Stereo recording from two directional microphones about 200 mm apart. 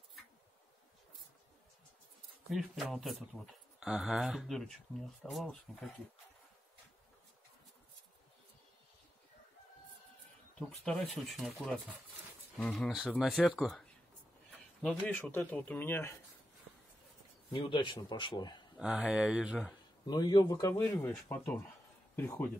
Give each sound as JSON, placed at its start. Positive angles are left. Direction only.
{"t": 2.5, "sound": "speech", "side_deg": 0}
{"t": 10.8, "sound": "speech", "side_deg": 0}
{"t": 17.5, "sound": "speech", "side_deg": 25}
{"t": 18.8, "sound": "speech", "side_deg": -5}
{"t": 20.1, "sound": "speech", "side_deg": 20}